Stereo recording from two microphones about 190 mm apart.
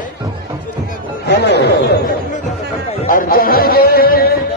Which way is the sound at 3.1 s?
50° left (ahead or behind).